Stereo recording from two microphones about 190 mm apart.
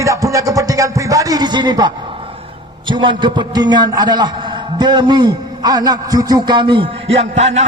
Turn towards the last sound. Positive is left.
turn(degrees=-35)  # may be behind; listen again after turning